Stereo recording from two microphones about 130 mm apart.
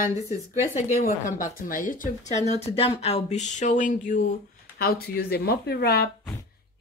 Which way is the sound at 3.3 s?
65° left (ahead or behind).